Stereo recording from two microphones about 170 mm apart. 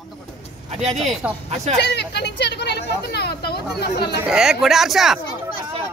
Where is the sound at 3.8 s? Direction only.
75° left (ahead or behind).